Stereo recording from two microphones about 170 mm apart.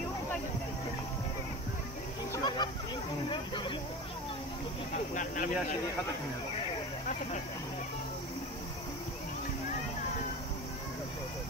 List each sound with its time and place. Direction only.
2.3 s a sound: 25° left (ahead or behind)
3.3 s speech: 30° left (ahead or behind)
4.9 s speech: 50° left (ahead or behind)